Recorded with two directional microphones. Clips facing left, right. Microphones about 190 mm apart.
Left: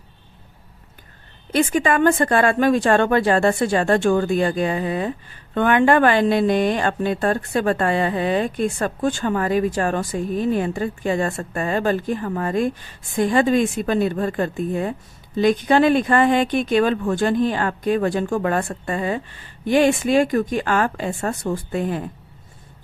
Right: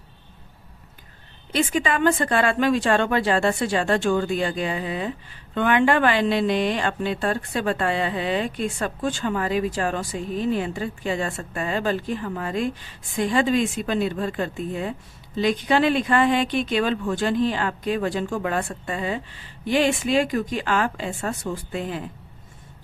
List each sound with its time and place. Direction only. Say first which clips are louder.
1.5 s speech: left 4 dB; 50° left (ahead or behind)